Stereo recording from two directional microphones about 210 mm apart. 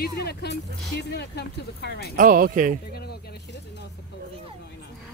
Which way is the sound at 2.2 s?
40° right (ahead or behind).